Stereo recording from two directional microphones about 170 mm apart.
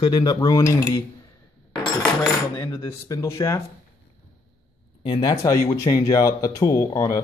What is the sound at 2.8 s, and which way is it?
Speech, 20° left (ahead or behind).